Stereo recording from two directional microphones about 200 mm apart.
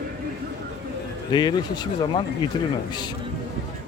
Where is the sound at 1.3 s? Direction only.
20° left (ahead or behind).